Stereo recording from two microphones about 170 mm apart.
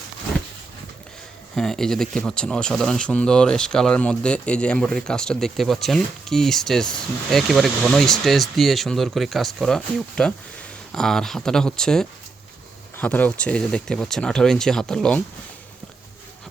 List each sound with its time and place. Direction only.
1.5 s speech: centre (ahead or behind)